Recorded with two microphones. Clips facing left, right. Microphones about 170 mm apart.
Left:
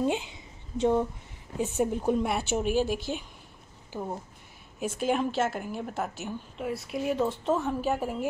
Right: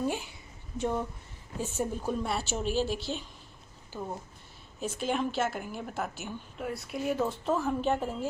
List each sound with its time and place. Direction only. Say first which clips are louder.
0.0 s a sound: left 4 dB; 20° left (ahead or behind)
1.6 s a woman's voice: left 5 dB; 15° left (ahead or behind)
4.7 s a woman's voice: left 3 dB; 10° left (ahead or behind)